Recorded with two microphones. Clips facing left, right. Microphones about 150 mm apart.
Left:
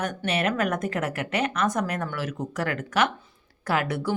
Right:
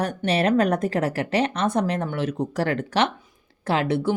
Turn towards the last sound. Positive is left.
turn(degrees=-25)  # may be behind; listen again after turning